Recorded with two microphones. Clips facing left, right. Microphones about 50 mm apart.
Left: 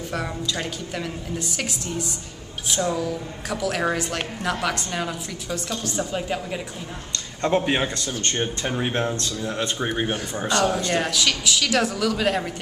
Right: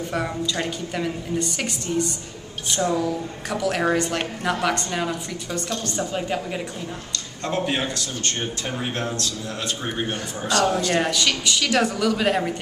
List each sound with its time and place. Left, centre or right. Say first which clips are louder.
0.1 s a woman's voice: right 1 dB; centre
7.4 s a man's voice: left 3 dB; centre
8.9 s a man's voice: left 2 dB; left
9.8 s a man's voice: left 2 dB; centre
10.9 s a woman's voice: right 1 dB; centre